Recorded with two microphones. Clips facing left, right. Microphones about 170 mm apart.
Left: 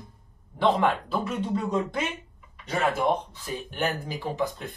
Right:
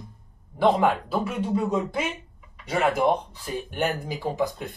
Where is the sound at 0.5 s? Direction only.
10° right (ahead or behind).